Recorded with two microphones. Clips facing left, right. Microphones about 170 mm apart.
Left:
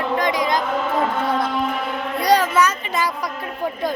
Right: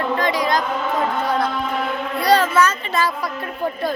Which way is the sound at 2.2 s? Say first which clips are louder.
Right 1 dB; 15° left (ahead or behind).